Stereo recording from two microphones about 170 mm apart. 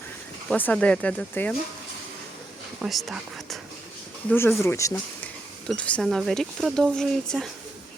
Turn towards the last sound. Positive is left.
turn(degrees=5)  # may be behind; listen again after turning